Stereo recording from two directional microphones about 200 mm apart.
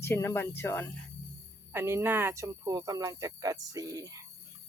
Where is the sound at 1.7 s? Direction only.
10° right (ahead or behind).